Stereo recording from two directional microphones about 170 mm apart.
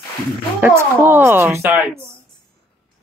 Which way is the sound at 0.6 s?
15° right (ahead or behind).